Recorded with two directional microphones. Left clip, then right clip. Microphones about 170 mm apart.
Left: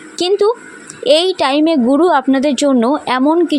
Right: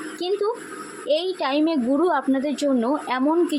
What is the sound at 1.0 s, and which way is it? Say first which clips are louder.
A woman's voice: left 11 dB; 60° left (ahead or behind).